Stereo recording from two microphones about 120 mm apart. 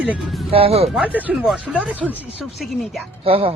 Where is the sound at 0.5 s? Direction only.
55° right (ahead or behind).